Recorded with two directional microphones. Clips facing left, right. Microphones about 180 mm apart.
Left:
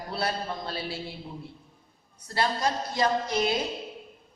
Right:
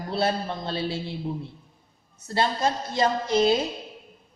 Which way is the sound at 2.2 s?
25° right (ahead or behind).